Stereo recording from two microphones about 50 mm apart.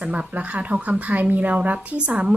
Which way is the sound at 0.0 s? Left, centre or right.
Right.